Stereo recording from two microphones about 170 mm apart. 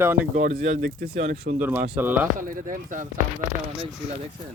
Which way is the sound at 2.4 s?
55° right (ahead or behind).